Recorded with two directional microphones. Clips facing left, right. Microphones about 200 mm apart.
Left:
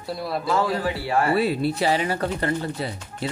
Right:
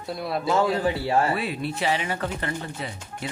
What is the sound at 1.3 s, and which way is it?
Speech, 40° left (ahead or behind).